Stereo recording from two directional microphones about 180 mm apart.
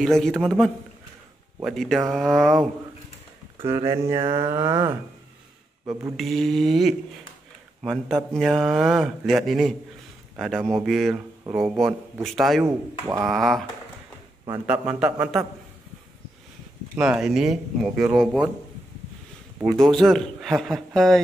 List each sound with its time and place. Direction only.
0.0 s speech: centre (ahead or behind)
3.6 s speech: 15° right (ahead or behind)
6.1 s speech: centre (ahead or behind)
12.6 s speech: 15° right (ahead or behind)
13.2 s speech: centre (ahead or behind)
14.7 s speech: 5° right (ahead or behind)
16.9 s speech: 5° right (ahead or behind)
19.8 s speech: centre (ahead or behind)